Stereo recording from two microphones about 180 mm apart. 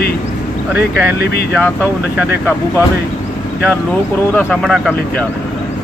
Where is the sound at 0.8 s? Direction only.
65° left (ahead or behind).